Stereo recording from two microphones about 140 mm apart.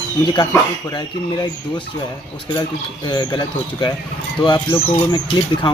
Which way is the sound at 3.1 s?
30° left (ahead or behind).